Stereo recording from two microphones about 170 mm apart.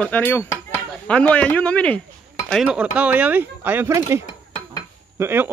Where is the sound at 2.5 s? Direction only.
5° right (ahead or behind).